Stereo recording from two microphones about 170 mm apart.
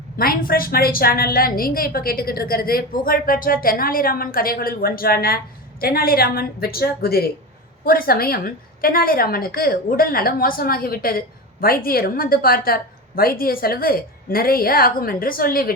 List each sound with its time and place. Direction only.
0.2 s a woman's voice: 60° left (ahead or behind)